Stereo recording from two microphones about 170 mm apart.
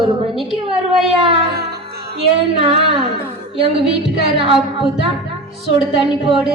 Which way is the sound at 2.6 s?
30° right (ahead or behind).